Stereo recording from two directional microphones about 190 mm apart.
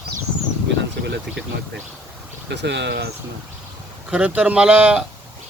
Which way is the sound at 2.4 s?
65° right (ahead or behind).